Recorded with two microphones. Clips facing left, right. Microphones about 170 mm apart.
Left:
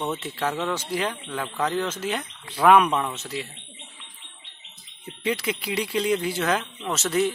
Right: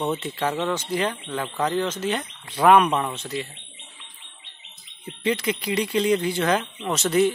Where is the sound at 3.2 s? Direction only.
5° left (ahead or behind).